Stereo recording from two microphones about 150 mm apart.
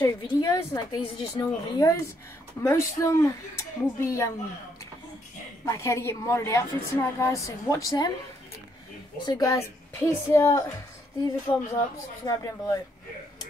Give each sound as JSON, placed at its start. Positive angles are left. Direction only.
{"t": 0.0, "sound": "a woman's voice", "side_deg": 25}
{"t": 5.7, "sound": "a woman's voice", "side_deg": 20}
{"t": 9.2, "sound": "a woman's voice", "side_deg": 25}